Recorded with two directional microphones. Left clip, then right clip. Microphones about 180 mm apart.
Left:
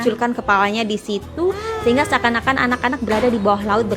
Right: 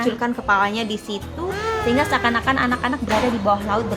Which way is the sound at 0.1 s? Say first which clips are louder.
Left 5 dB; 30° left (ahead or behind).